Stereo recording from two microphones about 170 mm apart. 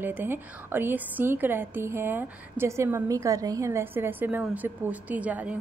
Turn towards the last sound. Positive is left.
turn(degrees=-10)  # may be behind; listen again after turning